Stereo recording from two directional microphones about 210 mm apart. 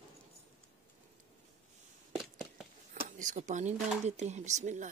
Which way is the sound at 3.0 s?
35° right (ahead or behind).